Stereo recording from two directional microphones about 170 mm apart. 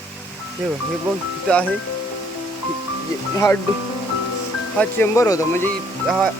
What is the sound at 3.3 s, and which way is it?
Speech, 20° left (ahead or behind).